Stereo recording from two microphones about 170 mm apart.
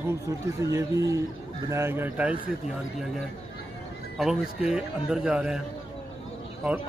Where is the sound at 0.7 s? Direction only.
20° right (ahead or behind).